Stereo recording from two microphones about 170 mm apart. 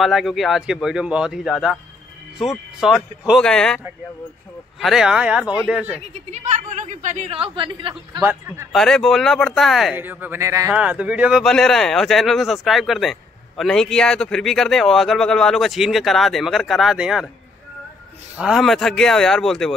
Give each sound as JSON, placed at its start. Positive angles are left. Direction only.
{"t": 0.0, "sound": "speech", "side_deg": 0}
{"t": 6.1, "sound": "a woman's voice", "side_deg": -40}
{"t": 8.2, "sound": "speech", "side_deg": -15}
{"t": 8.7, "sound": "speech", "side_deg": 0}
{"t": 9.9, "sound": "speech", "side_deg": -10}
{"t": 10.7, "sound": "speech", "side_deg": -5}
{"t": 18.4, "sound": "speech", "side_deg": 0}